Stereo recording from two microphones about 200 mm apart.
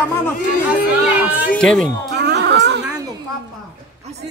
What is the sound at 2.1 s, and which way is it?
Music, 60° right (ahead or behind).